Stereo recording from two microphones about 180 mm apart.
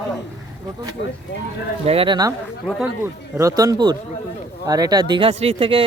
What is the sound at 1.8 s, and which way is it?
Speech, 30° right (ahead or behind).